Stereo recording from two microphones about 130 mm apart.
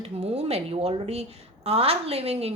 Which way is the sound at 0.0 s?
50° right (ahead or behind).